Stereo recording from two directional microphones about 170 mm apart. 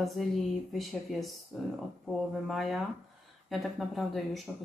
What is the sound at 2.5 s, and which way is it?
Speech, centre (ahead or behind).